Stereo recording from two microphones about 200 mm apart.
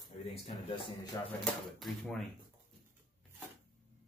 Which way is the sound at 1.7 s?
Centre (ahead or behind).